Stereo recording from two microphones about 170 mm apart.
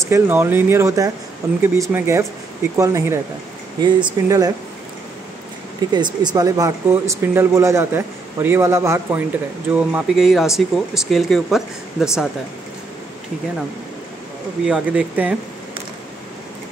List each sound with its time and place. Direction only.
0.1 s speech: 15° right (ahead or behind)
5.9 s speech: 25° right (ahead or behind); by 12.3 s 5° right (ahead or behind)
14.6 s speech: 5° right (ahead or behind)